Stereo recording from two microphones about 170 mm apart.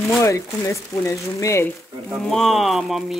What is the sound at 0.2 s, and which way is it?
Speech, 15° left (ahead or behind).